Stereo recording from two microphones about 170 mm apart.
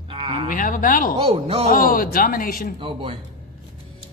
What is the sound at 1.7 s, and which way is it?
A man's voice, 55° left (ahead or behind).